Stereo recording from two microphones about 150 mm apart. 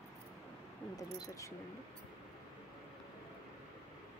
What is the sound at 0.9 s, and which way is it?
Speech, 25° left (ahead or behind).